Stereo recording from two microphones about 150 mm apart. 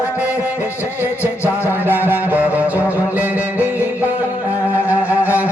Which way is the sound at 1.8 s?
15° right (ahead or behind).